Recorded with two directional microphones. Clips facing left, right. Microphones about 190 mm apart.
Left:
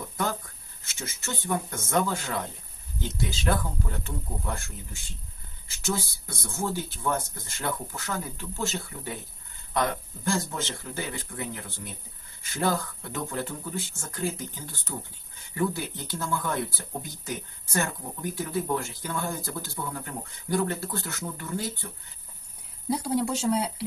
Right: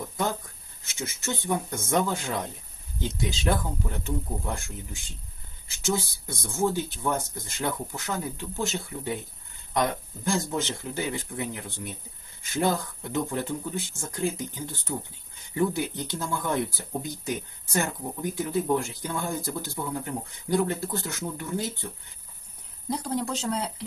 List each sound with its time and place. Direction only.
0.8 s speech: 20° right (ahead or behind)
22.9 s speech: 10° left (ahead or behind)